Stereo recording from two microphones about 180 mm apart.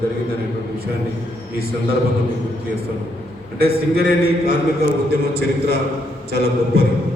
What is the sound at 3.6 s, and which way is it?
Speech, 60° right (ahead or behind).